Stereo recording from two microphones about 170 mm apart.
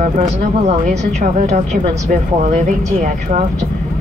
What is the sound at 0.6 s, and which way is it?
Speech, 50° right (ahead or behind).